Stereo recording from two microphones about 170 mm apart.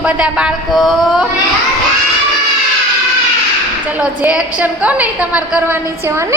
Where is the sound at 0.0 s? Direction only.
5° right (ahead or behind).